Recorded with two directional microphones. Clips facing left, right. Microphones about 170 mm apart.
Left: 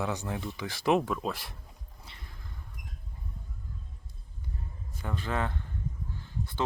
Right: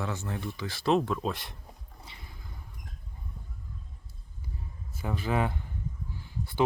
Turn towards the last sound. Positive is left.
turn(degrees=-10)  # may be behind; listen again after turning